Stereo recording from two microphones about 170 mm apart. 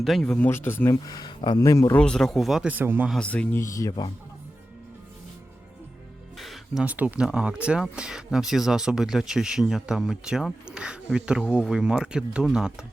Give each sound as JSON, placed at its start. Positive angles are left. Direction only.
{"t": 0.0, "sound": "speech", "side_deg": 0}
{"t": 2.0, "sound": "speech", "side_deg": 5}
{"t": 3.1, "sound": "speech", "side_deg": 5}
{"t": 6.3, "sound": "speech", "side_deg": 0}